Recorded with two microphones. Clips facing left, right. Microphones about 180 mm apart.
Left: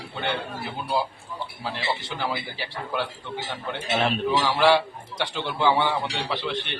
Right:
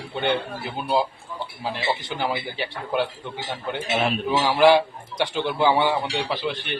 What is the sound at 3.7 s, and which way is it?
A man's voice, 10° right (ahead or behind).